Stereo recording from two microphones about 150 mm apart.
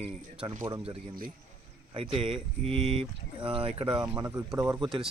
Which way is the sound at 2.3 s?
Centre (ahead or behind).